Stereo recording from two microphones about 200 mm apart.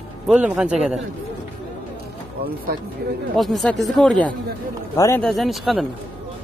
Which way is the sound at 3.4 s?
Centre (ahead or behind).